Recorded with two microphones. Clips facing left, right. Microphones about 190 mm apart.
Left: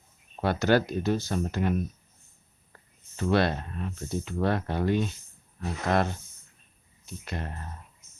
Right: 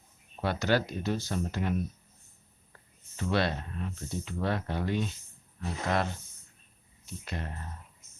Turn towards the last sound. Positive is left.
turn(degrees=50)  # may be behind; listen again after turning